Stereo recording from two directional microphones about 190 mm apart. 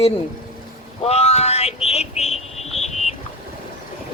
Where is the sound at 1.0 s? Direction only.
35° left (ahead or behind).